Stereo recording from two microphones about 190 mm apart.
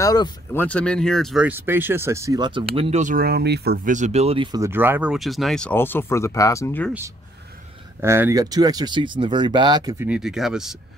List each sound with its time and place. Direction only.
0.0 s speech: 20° left (ahead or behind)
8.0 s speech: 15° right (ahead or behind)
10.0 s speech: 5° right (ahead or behind)